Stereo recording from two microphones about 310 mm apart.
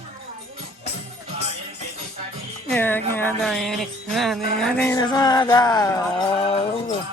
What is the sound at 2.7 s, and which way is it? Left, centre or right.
Speech, centre.